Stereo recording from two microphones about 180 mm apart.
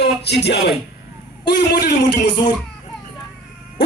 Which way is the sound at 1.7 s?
65° left (ahead or behind).